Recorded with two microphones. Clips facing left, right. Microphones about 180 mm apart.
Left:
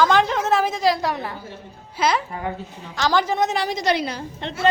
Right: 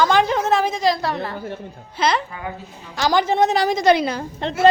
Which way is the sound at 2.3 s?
35° left (ahead or behind).